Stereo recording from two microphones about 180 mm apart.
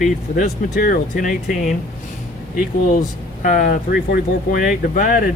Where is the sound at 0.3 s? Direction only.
50° left (ahead or behind).